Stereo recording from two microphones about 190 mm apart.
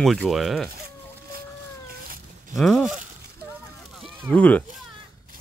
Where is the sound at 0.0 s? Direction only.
Centre (ahead or behind).